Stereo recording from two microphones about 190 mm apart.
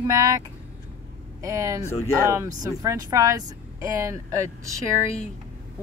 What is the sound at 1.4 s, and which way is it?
Speech, 15° right (ahead or behind).